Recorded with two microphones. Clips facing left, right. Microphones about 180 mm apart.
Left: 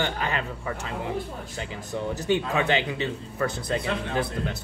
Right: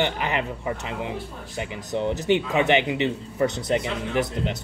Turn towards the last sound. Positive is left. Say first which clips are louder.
# right 3 dB
turn(degrees=-20)  # may be behind; listen again after turning